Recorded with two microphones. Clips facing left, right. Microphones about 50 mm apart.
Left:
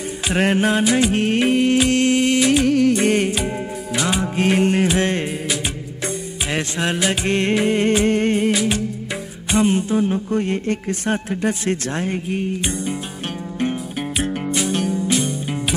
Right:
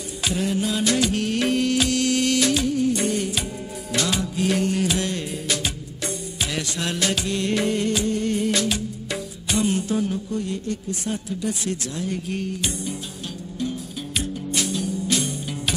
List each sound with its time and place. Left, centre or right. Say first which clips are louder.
0.3 s a man's voice: left 7 dB; left
0.9 s music: left 5 dB; left
2.6 s music of bollywood: left 6 dB; left
3.0 s music: left 7 dB; left
3.9 s music: left 3 dB; centre
4.2 s music: left 5 dB; left
8.0 s music: left 6 dB; left
9.6 s music: left 5 dB; left
10.0 s a man's voice: left 6 dB; left
12.3 s music: left 4 dB; left
14.7 s music: left 6 dB; left
15.0 s music: left 4 dB; centre